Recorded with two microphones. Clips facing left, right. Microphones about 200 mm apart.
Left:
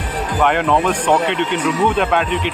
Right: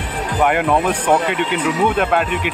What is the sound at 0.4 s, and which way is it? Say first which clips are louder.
Speech: even; 10° right (ahead or behind).